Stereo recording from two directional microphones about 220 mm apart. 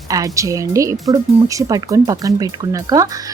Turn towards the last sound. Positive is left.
turn(degrees=-15)  # may be behind; listen again after turning